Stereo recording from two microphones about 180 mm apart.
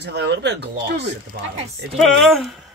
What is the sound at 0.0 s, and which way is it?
Speech, 70° right (ahead or behind).